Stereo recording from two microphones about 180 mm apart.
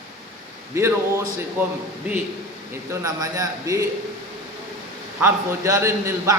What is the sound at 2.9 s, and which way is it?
A man's voice, 20° right (ahead or behind).